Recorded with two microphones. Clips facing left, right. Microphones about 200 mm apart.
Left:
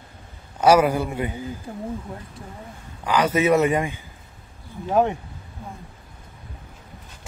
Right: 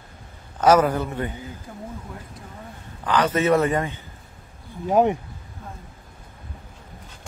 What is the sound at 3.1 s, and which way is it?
Speech, 10° left (ahead or behind).